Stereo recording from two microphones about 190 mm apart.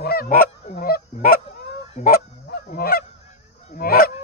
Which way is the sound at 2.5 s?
55° left (ahead or behind).